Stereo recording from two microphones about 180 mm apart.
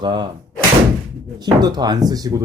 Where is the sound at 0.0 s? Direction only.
25° right (ahead or behind).